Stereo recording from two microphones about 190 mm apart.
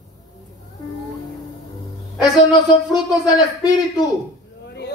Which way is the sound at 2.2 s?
20° left (ahead or behind).